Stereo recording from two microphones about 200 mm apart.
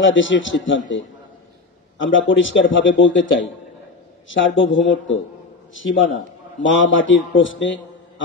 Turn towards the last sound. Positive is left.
turn(degrees=70)  # may be behind; listen again after turning